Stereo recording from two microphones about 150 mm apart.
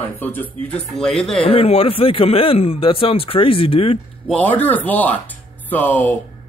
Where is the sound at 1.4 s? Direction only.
40° left (ahead or behind).